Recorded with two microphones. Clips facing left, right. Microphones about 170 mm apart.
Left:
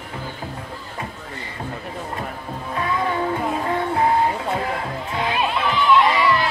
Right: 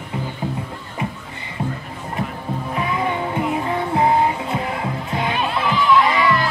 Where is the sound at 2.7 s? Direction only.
15° right (ahead or behind).